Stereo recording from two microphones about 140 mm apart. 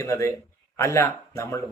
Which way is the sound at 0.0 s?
20° left (ahead or behind).